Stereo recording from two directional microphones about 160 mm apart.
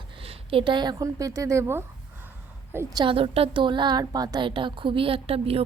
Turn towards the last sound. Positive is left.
turn(degrees=-40)  # may be behind; listen again after turning